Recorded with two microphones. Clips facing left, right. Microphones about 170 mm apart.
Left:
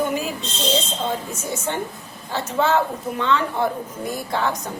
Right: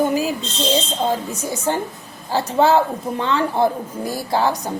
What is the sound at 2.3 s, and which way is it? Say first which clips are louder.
A woman's voice: right 5 dB; 35° right (ahead or behind).